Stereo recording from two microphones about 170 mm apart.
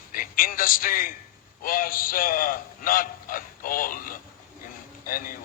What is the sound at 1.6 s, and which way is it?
A man's voice, 55° left (ahead or behind).